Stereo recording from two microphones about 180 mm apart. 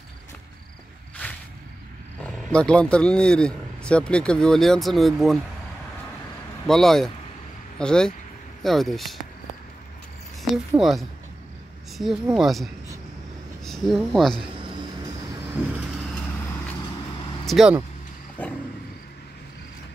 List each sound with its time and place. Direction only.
2.2 s speech: 5° left (ahead or behind)
6.7 s speech: centre (ahead or behind)
10.8 s speech: centre (ahead or behind)
13.7 s speech: centre (ahead or behind)
17.5 s speech: centre (ahead or behind)
18.4 s a sound: 10° left (ahead or behind)